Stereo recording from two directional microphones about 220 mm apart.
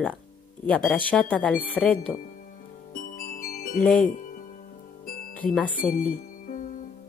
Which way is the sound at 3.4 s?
35° left (ahead or behind).